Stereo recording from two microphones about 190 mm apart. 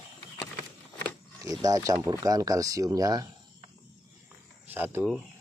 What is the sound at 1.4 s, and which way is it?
Speech, 20° right (ahead or behind).